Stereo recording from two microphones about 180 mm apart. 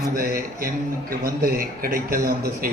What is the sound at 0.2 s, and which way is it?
A man's voice, 55° right (ahead or behind).